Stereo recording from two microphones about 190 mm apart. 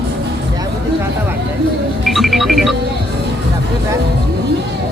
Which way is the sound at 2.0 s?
Centre (ahead or behind).